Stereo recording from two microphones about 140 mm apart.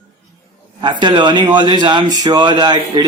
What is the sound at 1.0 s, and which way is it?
A man's voice, 35° right (ahead or behind).